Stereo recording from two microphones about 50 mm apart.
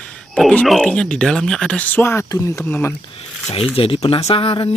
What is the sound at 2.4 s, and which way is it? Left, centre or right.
Speech, left.